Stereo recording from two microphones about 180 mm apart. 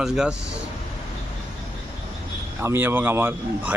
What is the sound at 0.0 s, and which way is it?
Speech, 5° right (ahead or behind).